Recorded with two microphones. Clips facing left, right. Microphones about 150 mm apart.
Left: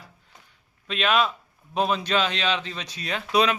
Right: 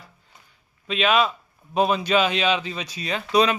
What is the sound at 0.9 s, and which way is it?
Speech, centre (ahead or behind).